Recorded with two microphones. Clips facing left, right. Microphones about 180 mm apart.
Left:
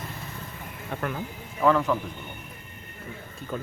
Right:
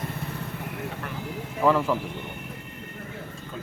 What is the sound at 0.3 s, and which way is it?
Vehicle, 70° right (ahead or behind).